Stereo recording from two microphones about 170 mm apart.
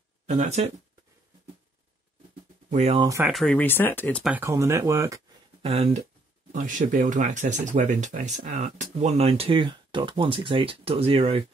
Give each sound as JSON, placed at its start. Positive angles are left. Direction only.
{"t": 0.3, "sound": "speech", "side_deg": -45}
{"t": 3.3, "sound": "speech", "side_deg": 0}
{"t": 4.2, "sound": "speech", "side_deg": -10}
{"t": 5.6, "sound": "speech", "side_deg": -35}
{"t": 6.5, "sound": "speech", "side_deg": -50}